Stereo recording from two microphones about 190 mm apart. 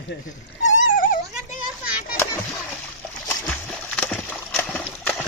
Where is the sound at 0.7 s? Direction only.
40° left (ahead or behind).